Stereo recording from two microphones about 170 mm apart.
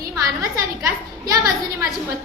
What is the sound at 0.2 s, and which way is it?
A woman's voice, 20° right (ahead or behind).